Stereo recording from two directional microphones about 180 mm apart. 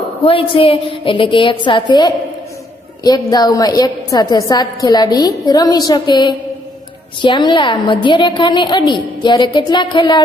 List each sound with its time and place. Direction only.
0.2 s a woman's voice: 30° left (ahead or behind)
3.3 s a woman's voice: 20° left (ahead or behind)